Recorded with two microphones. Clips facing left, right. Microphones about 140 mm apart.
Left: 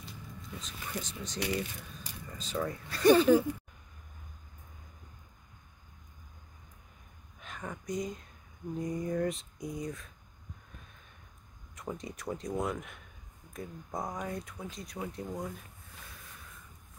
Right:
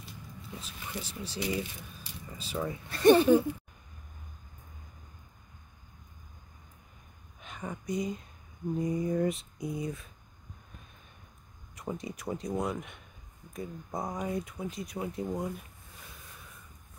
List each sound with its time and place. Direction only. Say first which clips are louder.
0.4 s speech: right 1 dB; 5° right (ahead or behind)
2.9 s speech: right 2 dB; 25° right (ahead or behind)
7.3 s speech: right 2 dB; 5° right (ahead or behind)
8.7 s a sound: right 3 dB; 5° right (ahead or behind)
11.7 s a sound: right 2 dB; 5° right (ahead or behind)
13.5 s speech: right 2 dB; 5° right (ahead or behind)